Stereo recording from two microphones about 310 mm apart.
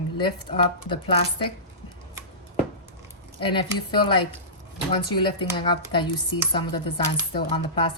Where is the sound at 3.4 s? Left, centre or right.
Centre.